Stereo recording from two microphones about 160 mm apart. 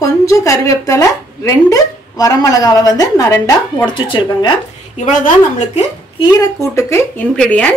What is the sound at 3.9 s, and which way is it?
Speech, 30° left (ahead or behind).